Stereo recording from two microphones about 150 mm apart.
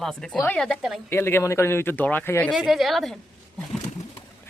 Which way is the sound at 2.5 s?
Centre (ahead or behind).